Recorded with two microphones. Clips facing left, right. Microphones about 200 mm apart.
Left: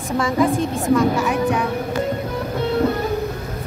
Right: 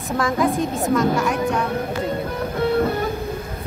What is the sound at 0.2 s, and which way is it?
A woman's voice, centre (ahead or behind).